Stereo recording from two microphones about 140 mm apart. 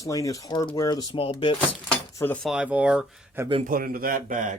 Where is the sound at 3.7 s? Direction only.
90° right; by 4.5 s 70° right (ahead or behind).